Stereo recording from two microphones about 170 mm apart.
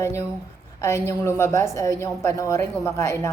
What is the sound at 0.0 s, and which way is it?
A woman's voice, 15° left (ahead or behind).